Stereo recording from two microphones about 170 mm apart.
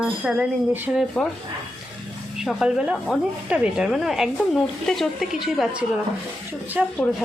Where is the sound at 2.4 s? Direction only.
5° right (ahead or behind).